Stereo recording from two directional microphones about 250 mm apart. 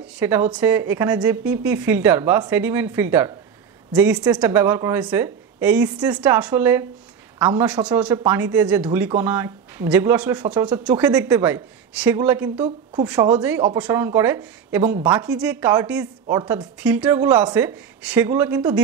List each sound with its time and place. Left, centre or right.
0.0 s a woman's voice: centre
15.2 s a woman's voice: centre